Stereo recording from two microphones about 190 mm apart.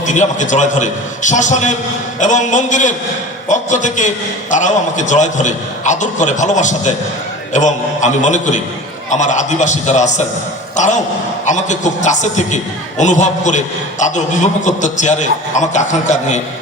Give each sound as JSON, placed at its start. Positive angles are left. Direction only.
{"t": 0.0, "sound": "a man's voice", "side_deg": 40}